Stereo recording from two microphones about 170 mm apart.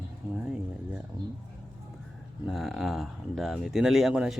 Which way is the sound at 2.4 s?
Centre (ahead or behind).